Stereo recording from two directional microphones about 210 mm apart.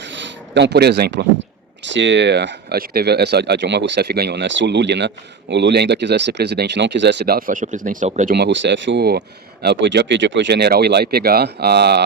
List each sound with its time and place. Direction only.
0.1 s speech: 55° right (ahead or behind); by 8.4 s 35° right (ahead or behind)
8.4 s speech: 55° right (ahead or behind)